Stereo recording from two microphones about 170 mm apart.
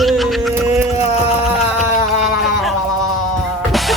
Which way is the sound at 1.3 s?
5° right (ahead or behind).